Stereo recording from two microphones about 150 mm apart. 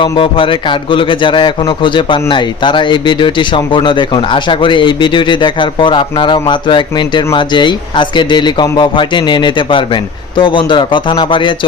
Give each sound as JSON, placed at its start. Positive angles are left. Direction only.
{"t": 0.0, "sound": "a man's voice", "side_deg": 35}